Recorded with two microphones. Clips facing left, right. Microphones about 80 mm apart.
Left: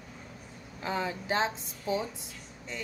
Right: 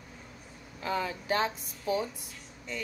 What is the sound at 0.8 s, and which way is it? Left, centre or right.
Speech, left.